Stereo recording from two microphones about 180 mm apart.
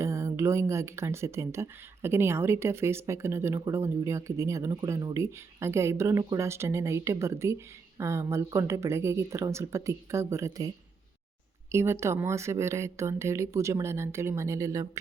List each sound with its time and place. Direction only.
0.0 s speech: 15° right (ahead or behind)
11.7 s speech: 15° right (ahead or behind)